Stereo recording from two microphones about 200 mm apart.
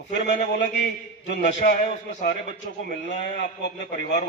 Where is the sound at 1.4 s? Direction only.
40° left (ahead or behind).